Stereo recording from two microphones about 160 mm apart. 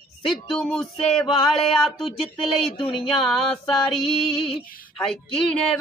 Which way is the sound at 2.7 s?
35° left (ahead or behind).